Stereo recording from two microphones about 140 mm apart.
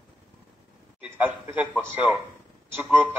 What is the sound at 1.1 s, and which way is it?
A man's voice, 15° right (ahead or behind).